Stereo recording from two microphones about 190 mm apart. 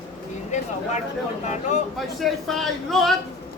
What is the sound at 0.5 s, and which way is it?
Speech, 40° left (ahead or behind).